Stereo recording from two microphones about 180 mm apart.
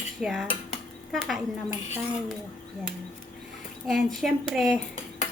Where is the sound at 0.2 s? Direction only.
Centre (ahead or behind).